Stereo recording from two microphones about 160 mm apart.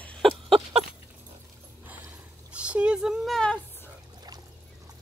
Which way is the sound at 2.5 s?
5° right (ahead or behind).